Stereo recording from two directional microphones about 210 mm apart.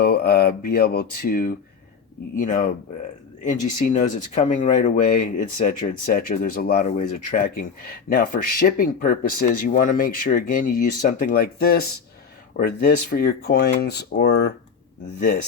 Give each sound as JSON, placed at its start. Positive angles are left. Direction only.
{"t": 0.0, "sound": "speech", "side_deg": 50}
{"t": 13.1, "sound": "speech", "side_deg": 50}